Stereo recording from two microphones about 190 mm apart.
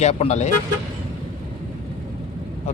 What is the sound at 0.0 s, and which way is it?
Speech, 35° left (ahead or behind).